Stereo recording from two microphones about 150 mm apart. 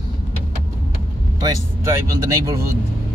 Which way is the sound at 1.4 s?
25° right (ahead or behind).